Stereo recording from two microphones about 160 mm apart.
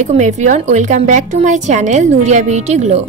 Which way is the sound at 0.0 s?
45° right (ahead or behind).